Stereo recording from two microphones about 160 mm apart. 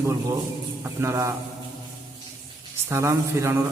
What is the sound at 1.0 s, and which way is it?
Speech, 20° right (ahead or behind).